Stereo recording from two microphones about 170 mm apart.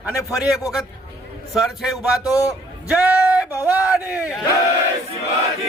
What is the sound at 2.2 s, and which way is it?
Speech, 20° left (ahead or behind).